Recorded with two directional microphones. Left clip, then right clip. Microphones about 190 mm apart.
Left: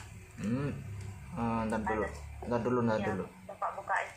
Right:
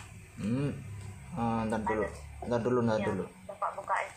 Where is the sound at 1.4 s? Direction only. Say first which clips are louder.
Right 2 dB; 20° right (ahead or behind).